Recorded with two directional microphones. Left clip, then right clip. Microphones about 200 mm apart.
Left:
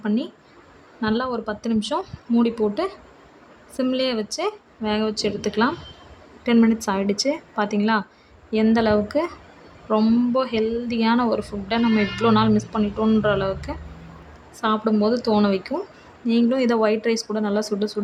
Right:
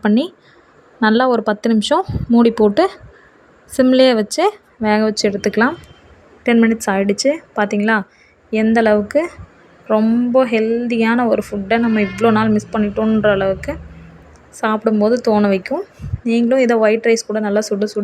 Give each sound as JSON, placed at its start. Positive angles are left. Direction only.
{"t": 0.0, "sound": "a woman's voice", "side_deg": -40}